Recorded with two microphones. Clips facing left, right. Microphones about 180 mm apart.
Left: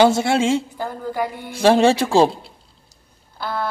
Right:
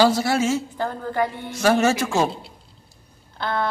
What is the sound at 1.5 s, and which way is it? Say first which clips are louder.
Speech: left 6 dB; 30° left (ahead or behind).